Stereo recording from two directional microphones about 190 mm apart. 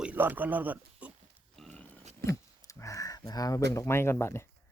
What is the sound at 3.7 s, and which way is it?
Speech, 15° left (ahead or behind).